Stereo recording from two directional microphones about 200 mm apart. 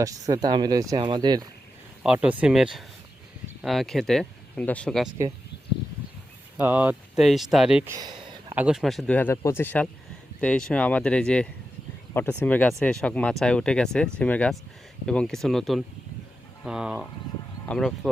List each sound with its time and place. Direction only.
0.0 s speech: 15° right (ahead or behind)
2.0 s speech: 5° right (ahead or behind)
6.6 s speech: 10° right (ahead or behind)
7.9 s a sound: 20° right (ahead or behind)
8.5 s speech: 5° right (ahead or behind)